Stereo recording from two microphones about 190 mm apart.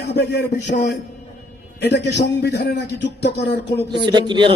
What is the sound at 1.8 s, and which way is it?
Music, 60° left (ahead or behind).